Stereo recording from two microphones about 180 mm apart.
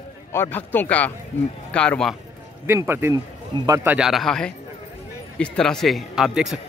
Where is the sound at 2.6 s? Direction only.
15° right (ahead or behind).